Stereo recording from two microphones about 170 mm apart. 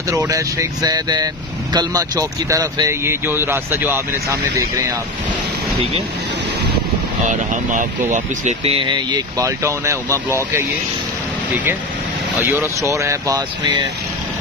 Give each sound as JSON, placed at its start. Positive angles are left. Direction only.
{"t": 0.1, "sound": "speech", "side_deg": -15}
{"t": 7.2, "sound": "speech", "side_deg": -45}
{"t": 12.4, "sound": "speech", "side_deg": -15}